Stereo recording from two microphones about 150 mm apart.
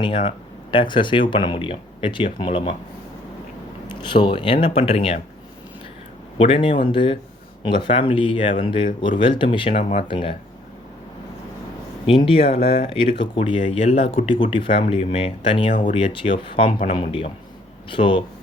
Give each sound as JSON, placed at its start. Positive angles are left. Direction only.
{"t": 0.0, "sound": "speech", "side_deg": 35}
{"t": 3.8, "sound": "speech", "side_deg": 30}
{"t": 6.4, "sound": "speech", "side_deg": 40}
{"t": 12.0, "sound": "speech", "side_deg": 35}
{"t": 16.6, "sound": "speech", "side_deg": 50}